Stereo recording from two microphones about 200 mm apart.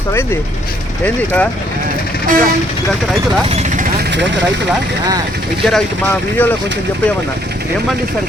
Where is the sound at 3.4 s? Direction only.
35° right (ahead or behind).